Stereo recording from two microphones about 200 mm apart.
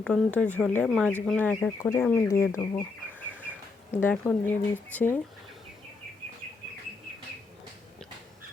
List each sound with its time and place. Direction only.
0.0 s speech: 5° left (ahead or behind)